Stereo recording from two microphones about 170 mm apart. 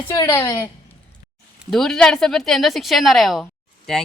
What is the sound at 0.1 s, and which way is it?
Speech, 15° left (ahead or behind).